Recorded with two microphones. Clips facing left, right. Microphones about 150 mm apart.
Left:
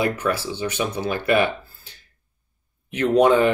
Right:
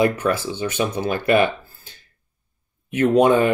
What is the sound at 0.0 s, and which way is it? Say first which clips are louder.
Speech: right 3 dB; 50° right (ahead or behind).